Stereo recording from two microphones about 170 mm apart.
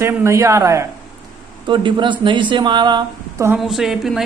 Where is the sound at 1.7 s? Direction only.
30° right (ahead or behind).